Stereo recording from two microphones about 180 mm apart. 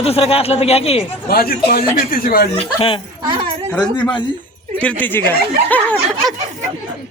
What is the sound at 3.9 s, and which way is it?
A man's voice, 5° left (ahead or behind).